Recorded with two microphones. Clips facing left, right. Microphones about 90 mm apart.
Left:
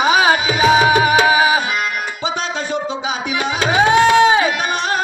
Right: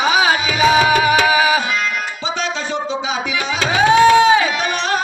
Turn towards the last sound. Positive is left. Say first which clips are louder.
# right 1 dB
turn(degrees=15)  # may be behind; listen again after turning